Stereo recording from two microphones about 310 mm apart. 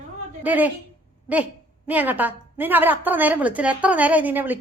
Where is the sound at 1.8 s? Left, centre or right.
Centre.